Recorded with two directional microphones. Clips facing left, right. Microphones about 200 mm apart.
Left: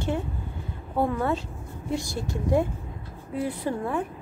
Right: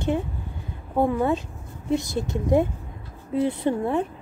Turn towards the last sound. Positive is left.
turn(degrees=-25)  # may be behind; listen again after turning